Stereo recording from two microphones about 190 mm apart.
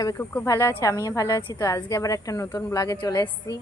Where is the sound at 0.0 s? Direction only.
15° left (ahead or behind).